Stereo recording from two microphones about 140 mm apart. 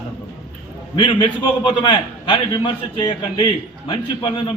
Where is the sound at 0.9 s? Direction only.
35° left (ahead or behind).